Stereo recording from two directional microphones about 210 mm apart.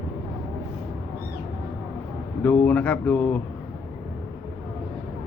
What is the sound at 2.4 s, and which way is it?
Speech, 10° left (ahead or behind).